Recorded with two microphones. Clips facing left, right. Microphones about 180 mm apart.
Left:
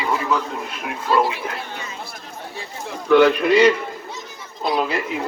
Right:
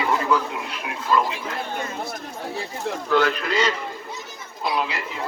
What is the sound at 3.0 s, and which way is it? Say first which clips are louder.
Speech: left 8 dB; 60° left (ahead or behind).